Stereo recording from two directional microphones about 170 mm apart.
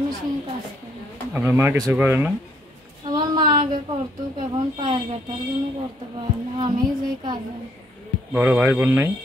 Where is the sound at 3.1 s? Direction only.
25° right (ahead or behind).